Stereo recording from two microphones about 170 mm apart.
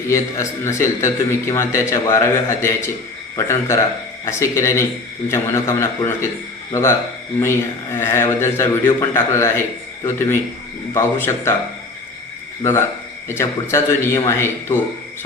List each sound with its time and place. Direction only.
0.1 s a man's voice: 15° left (ahead or behind)
7.9 s a man's voice: 15° left (ahead or behind)
13.2 s a man's voice: 15° left (ahead or behind)